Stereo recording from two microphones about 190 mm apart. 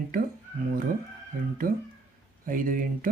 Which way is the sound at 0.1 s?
45° right (ahead or behind).